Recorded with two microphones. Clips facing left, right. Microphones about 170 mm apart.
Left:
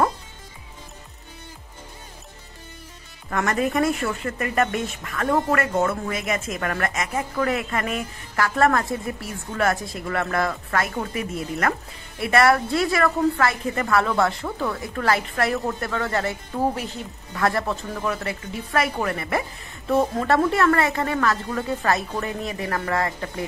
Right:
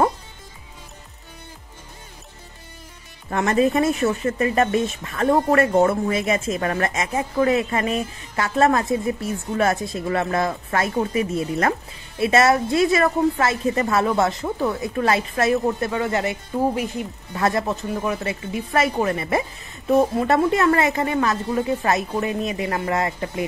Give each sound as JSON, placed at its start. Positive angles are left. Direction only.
{"t": 3.3, "sound": "a woman's voice", "side_deg": -25}